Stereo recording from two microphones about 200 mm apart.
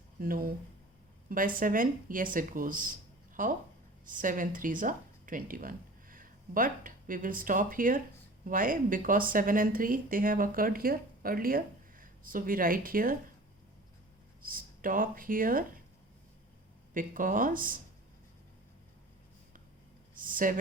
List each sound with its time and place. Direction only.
0.2 s a woman's voice: 45° right (ahead or behind)
14.4 s a woman's voice: 45° right (ahead or behind)
16.9 s a woman's voice: 40° right (ahead or behind)
20.1 s a sound: 40° right (ahead or behind)